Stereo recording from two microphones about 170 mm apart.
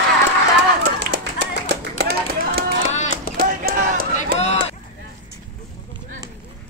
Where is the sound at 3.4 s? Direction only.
55° right (ahead or behind).